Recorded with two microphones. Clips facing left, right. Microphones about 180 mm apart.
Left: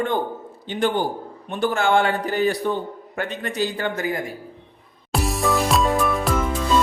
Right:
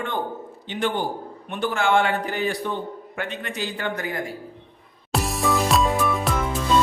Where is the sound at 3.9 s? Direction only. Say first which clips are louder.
Left 4 dB; 25° left (ahead or behind).